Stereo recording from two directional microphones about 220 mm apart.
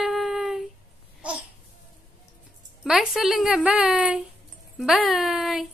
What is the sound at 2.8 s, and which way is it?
A woman's voice, centre (ahead or behind).